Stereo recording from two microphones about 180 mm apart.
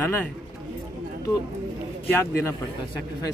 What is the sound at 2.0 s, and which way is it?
Speech, 15° left (ahead or behind).